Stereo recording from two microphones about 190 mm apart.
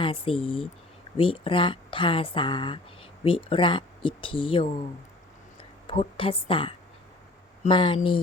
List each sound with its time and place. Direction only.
0.0 s speech: 30° left (ahead or behind)
5.9 s speech: 30° left (ahead or behind)